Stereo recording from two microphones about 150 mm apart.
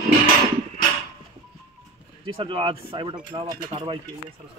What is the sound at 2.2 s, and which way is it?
Speech, 35° right (ahead or behind).